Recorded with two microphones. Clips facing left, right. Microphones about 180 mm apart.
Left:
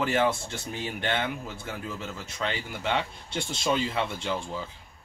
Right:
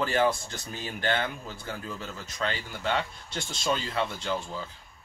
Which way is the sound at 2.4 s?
15° left (ahead or behind).